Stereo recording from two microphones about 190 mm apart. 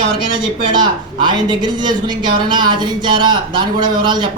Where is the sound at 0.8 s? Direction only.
25° right (ahead or behind).